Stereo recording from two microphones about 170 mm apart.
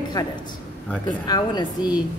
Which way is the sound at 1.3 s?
25° left (ahead or behind).